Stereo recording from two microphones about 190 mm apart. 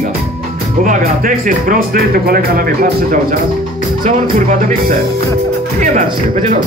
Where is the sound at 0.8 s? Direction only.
45° right (ahead or behind).